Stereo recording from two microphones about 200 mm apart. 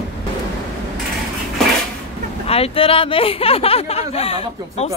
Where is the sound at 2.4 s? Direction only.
30° left (ahead or behind).